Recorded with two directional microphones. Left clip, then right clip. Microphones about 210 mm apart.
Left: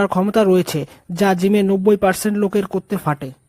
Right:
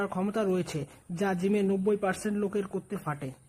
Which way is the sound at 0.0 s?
40° left (ahead or behind).